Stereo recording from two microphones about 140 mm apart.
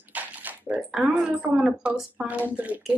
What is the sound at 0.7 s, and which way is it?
Speech, centre (ahead or behind).